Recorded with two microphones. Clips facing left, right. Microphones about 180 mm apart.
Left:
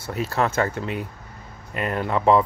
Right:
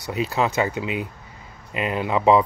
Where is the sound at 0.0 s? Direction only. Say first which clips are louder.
Right 1 dB; 15° right (ahead or behind).